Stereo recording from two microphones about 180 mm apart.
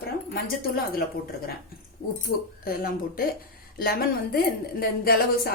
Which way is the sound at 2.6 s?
55° left (ahead or behind).